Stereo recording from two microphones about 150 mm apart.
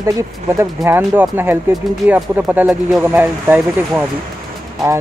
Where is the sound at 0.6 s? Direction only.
15° right (ahead or behind).